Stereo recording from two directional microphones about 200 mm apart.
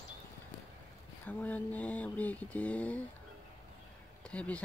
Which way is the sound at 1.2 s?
10° left (ahead or behind).